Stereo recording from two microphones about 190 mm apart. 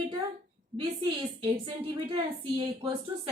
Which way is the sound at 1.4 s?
25° right (ahead or behind).